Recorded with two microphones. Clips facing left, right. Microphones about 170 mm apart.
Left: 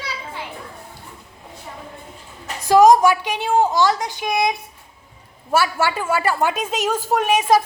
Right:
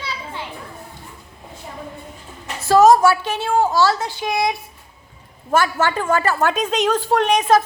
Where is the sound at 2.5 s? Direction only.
15° left (ahead or behind).